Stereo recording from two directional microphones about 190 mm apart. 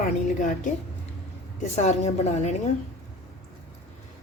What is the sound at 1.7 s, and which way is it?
Speech, 35° left (ahead or behind).